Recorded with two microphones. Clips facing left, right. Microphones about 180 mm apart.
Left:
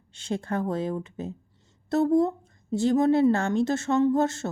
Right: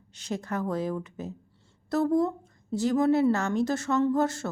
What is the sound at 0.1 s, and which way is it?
A woman's voice, 25° left (ahead or behind).